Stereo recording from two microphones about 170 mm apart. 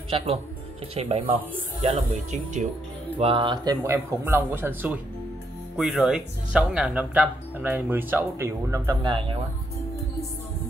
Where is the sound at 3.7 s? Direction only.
15° right (ahead or behind); by 9.4 s 30° right (ahead or behind).